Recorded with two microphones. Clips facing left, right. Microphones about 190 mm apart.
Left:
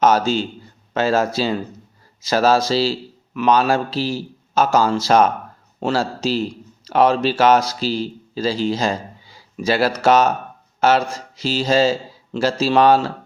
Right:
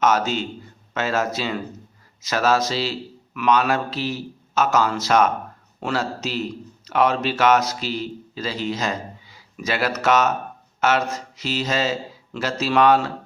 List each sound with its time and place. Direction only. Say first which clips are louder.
0.0 s speech: left 4 dB; 30° left (ahead or behind)